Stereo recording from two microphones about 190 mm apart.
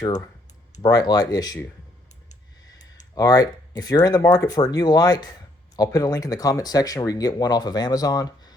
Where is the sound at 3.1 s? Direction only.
20° left (ahead or behind).